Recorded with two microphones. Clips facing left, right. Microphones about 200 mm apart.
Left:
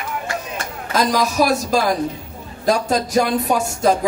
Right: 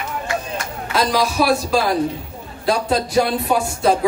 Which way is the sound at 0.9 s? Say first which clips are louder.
Left 1 dB; 45° left (ahead or behind).